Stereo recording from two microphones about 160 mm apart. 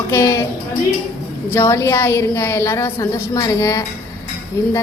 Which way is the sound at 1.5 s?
15° left (ahead or behind).